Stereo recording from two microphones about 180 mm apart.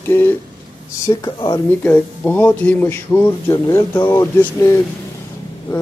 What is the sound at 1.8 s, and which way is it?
Speech, 10° left (ahead or behind).